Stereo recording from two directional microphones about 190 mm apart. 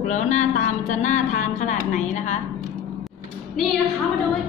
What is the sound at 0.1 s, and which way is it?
Speech, 40° left (ahead or behind).